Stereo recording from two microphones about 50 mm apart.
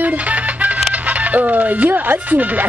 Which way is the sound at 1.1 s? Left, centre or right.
Right.